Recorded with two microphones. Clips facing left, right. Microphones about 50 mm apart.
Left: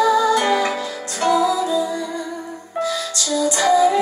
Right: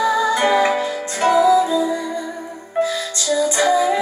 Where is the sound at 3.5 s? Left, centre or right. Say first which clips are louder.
Left 3 dB; right.